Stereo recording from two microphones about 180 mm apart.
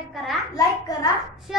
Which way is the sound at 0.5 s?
20° left (ahead or behind).